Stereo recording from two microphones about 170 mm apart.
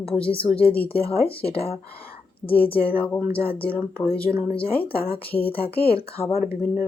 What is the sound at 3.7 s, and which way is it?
Speech, 10° left (ahead or behind).